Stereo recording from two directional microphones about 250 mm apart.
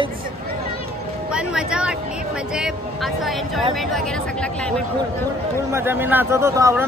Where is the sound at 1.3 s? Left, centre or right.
Centre.